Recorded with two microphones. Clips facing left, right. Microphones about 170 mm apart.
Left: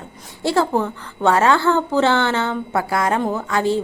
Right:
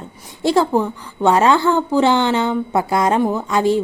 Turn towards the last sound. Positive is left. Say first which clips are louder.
# right 3 dB
turn(degrees=-15)  # may be behind; listen again after turning